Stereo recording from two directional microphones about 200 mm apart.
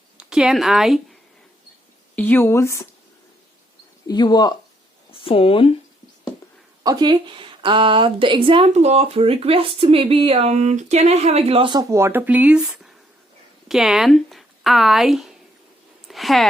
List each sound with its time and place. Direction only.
0.2 s a woman's voice: 5° right (ahead or behind)
2.1 s a woman's voice: 10° left (ahead or behind)
4.0 s speech: 20° left (ahead or behind)
6.8 s a woman's voice: 20° right (ahead or behind); by 16.5 s centre (ahead or behind)